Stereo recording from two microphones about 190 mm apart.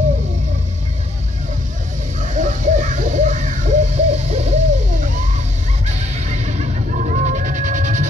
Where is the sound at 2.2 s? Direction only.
40° right (ahead or behind).